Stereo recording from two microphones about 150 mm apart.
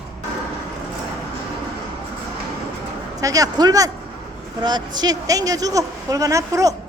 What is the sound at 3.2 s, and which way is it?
Speech, 25° right (ahead or behind).